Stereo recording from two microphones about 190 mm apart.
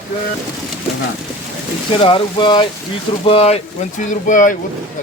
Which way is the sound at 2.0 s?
25° left (ahead or behind).